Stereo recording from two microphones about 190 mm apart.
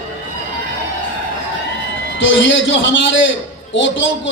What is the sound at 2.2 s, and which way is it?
A man's voice, 75° left (ahead or behind).